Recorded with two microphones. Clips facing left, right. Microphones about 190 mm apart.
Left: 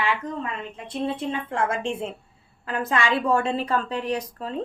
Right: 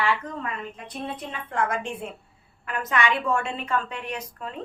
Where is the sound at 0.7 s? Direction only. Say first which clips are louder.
Left 6 dB; 25° left (ahead or behind).